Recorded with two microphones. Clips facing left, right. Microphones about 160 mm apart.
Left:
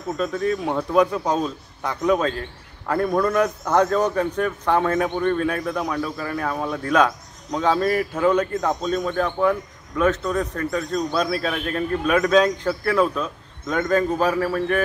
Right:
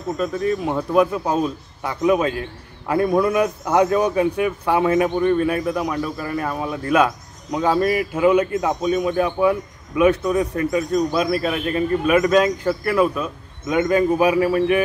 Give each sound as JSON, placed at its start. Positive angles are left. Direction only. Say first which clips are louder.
{"t": 0.2, "sound": "speech", "louder": "right 1 dB", "side_deg": -5}